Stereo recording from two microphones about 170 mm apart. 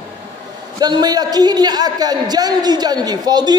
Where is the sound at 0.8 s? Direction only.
25° right (ahead or behind).